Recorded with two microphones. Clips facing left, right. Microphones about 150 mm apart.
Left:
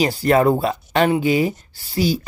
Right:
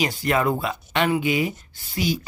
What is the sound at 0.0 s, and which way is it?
Speech, 35° left (ahead or behind).